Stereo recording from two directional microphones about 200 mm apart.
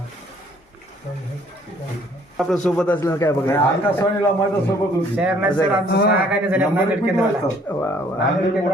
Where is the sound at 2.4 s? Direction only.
Centre (ahead or behind).